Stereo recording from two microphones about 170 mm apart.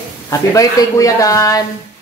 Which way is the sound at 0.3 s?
20° left (ahead or behind).